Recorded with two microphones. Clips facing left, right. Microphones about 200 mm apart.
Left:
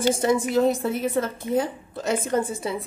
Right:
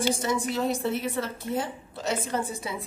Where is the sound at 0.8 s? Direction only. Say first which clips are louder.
Left 4 dB; 50° left (ahead or behind).